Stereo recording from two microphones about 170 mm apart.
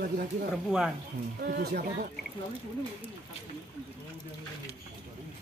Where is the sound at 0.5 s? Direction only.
5° right (ahead or behind).